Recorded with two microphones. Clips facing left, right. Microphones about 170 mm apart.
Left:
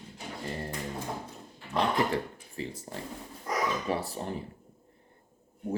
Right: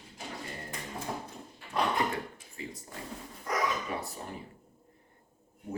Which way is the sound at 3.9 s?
30° left (ahead or behind).